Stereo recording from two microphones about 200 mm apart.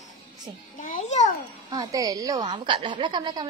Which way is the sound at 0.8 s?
40° left (ahead or behind).